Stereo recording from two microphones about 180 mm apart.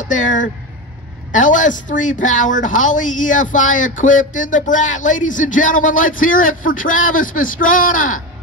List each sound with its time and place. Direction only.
0.0 s speech: 45° left (ahead or behind)